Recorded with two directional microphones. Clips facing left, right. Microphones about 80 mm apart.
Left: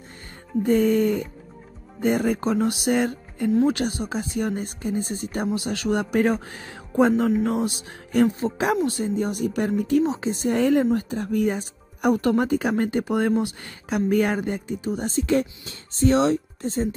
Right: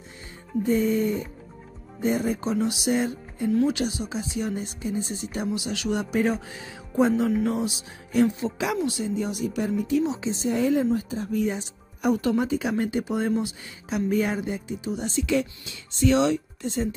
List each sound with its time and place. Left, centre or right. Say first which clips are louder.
0.7 s speech: left 4 dB; left